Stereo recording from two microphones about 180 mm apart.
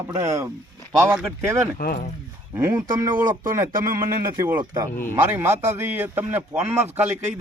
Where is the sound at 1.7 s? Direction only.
55° left (ahead or behind).